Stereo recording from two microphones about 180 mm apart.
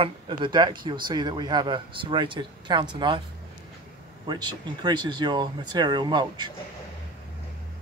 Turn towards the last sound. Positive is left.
turn(degrees=-25)  # may be behind; listen again after turning